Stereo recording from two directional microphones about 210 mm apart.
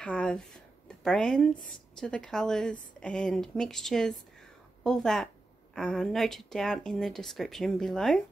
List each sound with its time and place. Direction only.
0.0 s speech: 5° left (ahead or behind)